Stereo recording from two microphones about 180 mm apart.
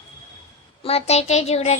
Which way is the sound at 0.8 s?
35° left (ahead or behind).